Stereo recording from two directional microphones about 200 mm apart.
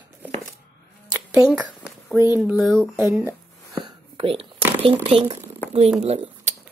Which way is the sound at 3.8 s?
25° right (ahead or behind).